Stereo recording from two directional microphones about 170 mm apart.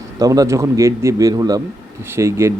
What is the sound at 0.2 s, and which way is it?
Speech, 20° right (ahead or behind).